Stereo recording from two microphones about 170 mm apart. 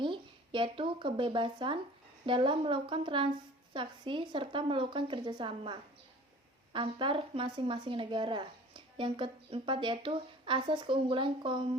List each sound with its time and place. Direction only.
0.0 s speech: 30° right (ahead or behind)